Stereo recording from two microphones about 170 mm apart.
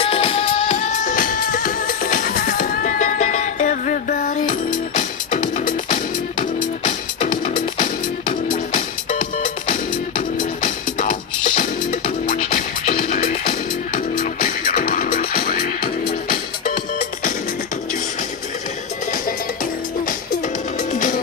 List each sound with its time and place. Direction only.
0.0 s music: 35° left (ahead or behind); by 5.9 s 50° left (ahead or behind)
6.8 s music: 35° left (ahead or behind)
7.7 s music: 50° left (ahead or behind)
19.2 s music: 55° left (ahead or behind)